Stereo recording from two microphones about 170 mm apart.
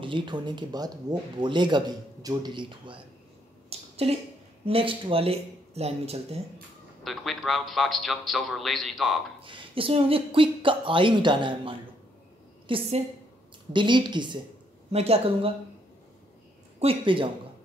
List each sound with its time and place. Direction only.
0.0 s a man's voice: 30° right (ahead or behind)
3.7 s a sound: 35° right (ahead or behind)
4.6 s speech: 30° right (ahead or behind)
7.0 s a man's voice: centre (ahead or behind)
9.4 s a woman's voice: 30° right (ahead or behind)
14.9 s speech: 35° right (ahead or behind)
16.8 s a man's voice: 30° right (ahead or behind)